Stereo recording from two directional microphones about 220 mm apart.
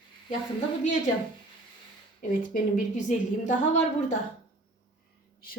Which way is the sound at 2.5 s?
35° left (ahead or behind).